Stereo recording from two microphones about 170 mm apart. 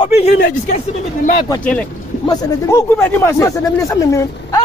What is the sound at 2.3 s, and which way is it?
Speech, 20° left (ahead or behind).